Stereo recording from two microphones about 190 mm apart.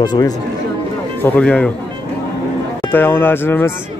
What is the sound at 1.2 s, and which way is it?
Speech, 10° left (ahead or behind).